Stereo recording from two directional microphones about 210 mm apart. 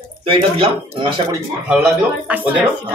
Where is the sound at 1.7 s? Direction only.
5° right (ahead or behind).